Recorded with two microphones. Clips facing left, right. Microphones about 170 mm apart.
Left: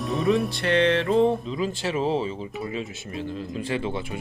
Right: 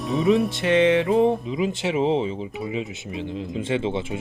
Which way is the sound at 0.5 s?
20° right (ahead or behind).